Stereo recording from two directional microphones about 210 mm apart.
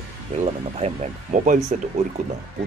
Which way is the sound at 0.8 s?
35° right (ahead or behind).